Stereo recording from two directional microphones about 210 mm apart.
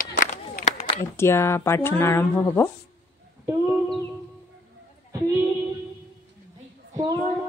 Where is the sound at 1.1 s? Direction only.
10° left (ahead or behind).